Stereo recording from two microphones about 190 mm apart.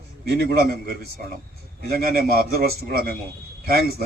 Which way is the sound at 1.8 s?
55° right (ahead or behind).